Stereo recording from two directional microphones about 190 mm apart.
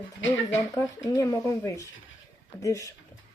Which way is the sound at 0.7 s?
20° left (ahead or behind).